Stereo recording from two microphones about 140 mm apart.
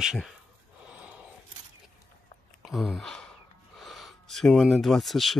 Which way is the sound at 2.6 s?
Centre (ahead or behind).